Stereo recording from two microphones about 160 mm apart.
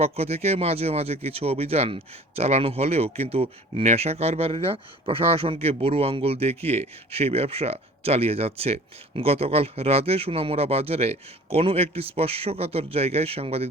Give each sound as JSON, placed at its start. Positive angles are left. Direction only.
{"t": 0.0, "sound": "speech", "side_deg": -40}